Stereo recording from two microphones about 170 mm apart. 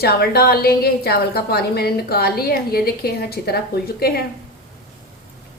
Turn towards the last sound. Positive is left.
turn(degrees=65)  # may be behind; listen again after turning